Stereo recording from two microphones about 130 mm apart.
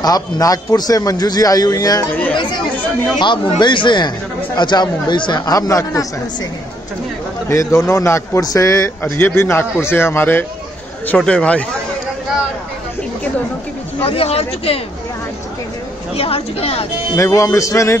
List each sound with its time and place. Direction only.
0.0 s a man's voice: 30° left (ahead or behind)
3.2 s speech: 35° left (ahead or behind)
7.4 s a man's voice: 20° left (ahead or behind)
13.9 s speech: 45° left (ahead or behind)
16.2 s speech: 50° left (ahead or behind)
17.1 s a man's voice: 25° left (ahead or behind)